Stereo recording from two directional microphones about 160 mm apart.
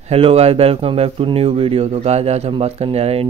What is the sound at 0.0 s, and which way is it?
Speech, 40° right (ahead or behind).